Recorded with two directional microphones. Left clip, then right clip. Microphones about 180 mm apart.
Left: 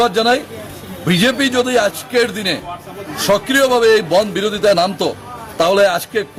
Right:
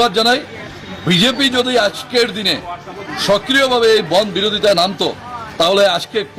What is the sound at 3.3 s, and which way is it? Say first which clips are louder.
A man's voice: even; 10° left (ahead or behind).